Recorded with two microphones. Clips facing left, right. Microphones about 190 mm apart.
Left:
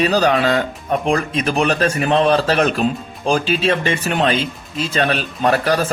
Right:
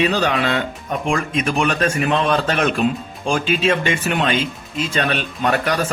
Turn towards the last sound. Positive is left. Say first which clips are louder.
# left 3 dB
turn(degrees=35)  # may be behind; listen again after turning